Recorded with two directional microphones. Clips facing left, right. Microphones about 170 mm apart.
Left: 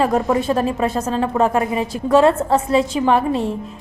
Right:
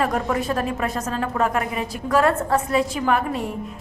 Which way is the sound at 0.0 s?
25° left (ahead or behind).